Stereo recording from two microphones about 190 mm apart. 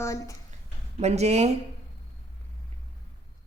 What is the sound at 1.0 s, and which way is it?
Speech, 35° right (ahead or behind).